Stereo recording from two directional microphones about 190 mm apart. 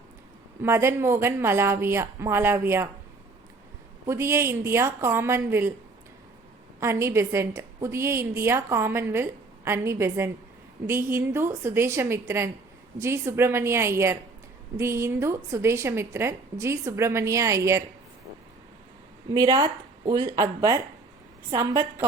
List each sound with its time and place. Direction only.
0.6 s a woman's voice: 15° right (ahead or behind)
4.0 s a woman's voice: 15° right (ahead or behind)
6.7 s a woman's voice: 15° right (ahead or behind)
19.3 s a woman's voice: 20° right (ahead or behind)